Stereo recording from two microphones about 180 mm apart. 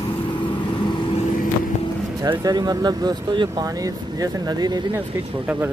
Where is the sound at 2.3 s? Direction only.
20° right (ahead or behind).